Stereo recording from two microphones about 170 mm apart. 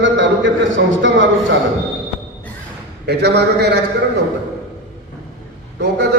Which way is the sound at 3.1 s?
85° right.